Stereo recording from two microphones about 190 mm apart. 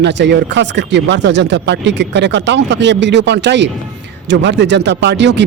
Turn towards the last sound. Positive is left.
turn(degrees=-65)  # may be behind; listen again after turning